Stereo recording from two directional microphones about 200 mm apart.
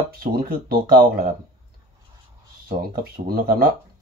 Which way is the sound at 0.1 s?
50° right (ahead or behind).